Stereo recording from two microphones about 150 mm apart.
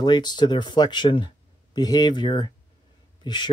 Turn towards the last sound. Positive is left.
turn(degrees=30)  # may be behind; listen again after turning